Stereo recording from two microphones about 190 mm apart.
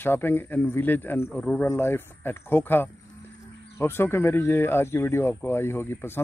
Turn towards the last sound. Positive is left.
turn(degrees=10)  # may be behind; listen again after turning